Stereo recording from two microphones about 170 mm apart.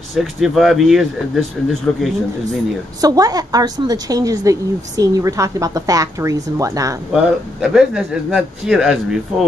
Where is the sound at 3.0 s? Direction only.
20° right (ahead or behind).